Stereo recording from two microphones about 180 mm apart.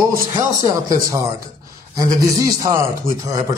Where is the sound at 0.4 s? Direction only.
20° right (ahead or behind).